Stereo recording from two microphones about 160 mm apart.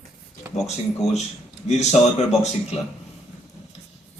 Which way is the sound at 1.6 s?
45° left (ahead or behind).